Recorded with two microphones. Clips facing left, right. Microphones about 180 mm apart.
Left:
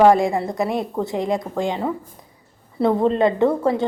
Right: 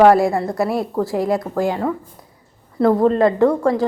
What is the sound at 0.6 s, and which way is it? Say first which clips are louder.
A woman's voice: right 3 dB; centre (ahead or behind).